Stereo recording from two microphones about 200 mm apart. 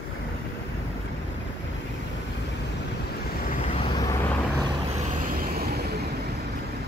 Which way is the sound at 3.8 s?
20° left (ahead or behind).